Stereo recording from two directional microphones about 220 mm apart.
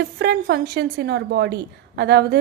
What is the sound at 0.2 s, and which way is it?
A woman's voice, 50° right (ahead or behind).